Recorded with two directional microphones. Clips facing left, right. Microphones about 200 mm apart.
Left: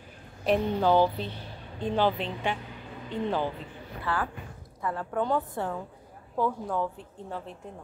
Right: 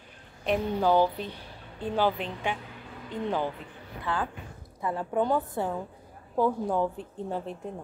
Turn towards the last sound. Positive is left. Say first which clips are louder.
# right 5 dB
turn(degrees=-15)  # may be behind; listen again after turning